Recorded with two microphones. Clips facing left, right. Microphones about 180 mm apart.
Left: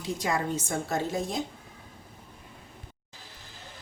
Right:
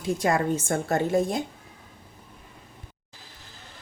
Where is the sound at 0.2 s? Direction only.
55° right (ahead or behind).